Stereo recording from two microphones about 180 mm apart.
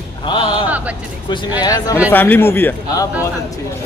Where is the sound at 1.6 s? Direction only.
20° left (ahead or behind).